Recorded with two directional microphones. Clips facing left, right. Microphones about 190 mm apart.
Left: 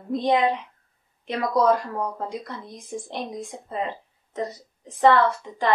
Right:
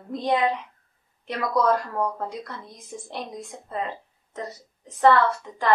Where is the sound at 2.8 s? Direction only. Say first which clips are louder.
Left 3 dB; 15° left (ahead or behind).